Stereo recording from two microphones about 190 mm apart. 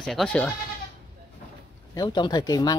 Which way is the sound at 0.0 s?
Centre (ahead or behind).